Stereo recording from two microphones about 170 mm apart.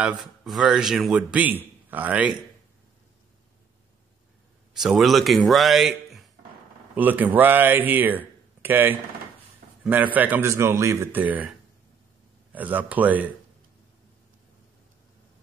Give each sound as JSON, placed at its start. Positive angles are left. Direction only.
{"t": 0.0, "sound": "speech", "side_deg": -5}
{"t": 4.7, "sound": "a man's voice", "side_deg": 0}
{"t": 12.5, "sound": "speech", "side_deg": -10}